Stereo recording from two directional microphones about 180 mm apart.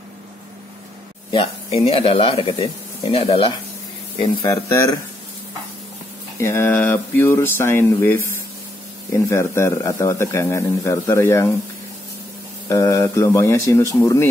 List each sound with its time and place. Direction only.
1.3 s speech: 30° left (ahead or behind)
4.2 s speech: 20° left (ahead or behind)
6.4 s a man's voice: 15° left (ahead or behind)
12.6 s a man's voice: 20° left (ahead or behind)